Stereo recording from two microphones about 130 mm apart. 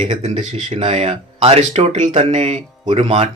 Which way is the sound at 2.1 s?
60° right (ahead or behind).